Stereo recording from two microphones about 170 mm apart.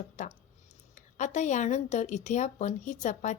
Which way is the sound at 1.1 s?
45° left (ahead or behind).